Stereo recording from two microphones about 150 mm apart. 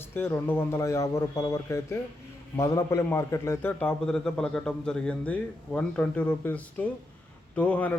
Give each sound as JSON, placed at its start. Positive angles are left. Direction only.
{"t": 0.1, "sound": "a man's voice", "side_deg": 15}